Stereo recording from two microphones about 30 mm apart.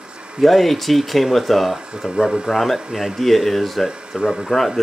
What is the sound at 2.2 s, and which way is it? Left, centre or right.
Speech, right.